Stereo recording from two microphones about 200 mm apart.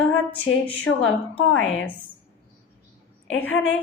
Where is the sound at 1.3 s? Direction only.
10° left (ahead or behind).